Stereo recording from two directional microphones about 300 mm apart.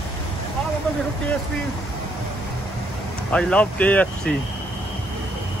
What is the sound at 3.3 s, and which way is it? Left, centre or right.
Speech, centre.